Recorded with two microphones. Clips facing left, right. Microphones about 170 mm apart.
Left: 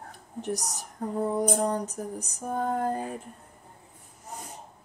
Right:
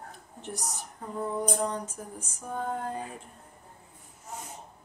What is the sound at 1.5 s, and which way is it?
Music, 45° left (ahead or behind).